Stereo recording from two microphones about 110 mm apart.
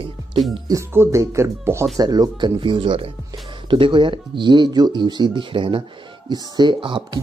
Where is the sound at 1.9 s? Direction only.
35° right (ahead or behind).